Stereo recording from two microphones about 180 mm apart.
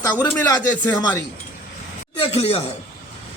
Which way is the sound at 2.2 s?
35° left (ahead or behind).